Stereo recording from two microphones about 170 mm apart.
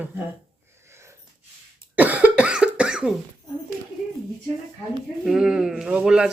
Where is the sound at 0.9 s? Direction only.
15° right (ahead or behind).